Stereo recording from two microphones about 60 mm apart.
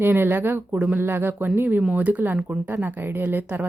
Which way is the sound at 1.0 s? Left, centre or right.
Right.